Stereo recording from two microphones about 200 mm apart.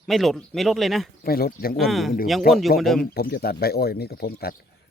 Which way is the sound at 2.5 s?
45° left (ahead or behind).